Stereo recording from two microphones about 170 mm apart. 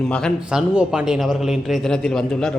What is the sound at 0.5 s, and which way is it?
A man's voice, 5° right (ahead or behind).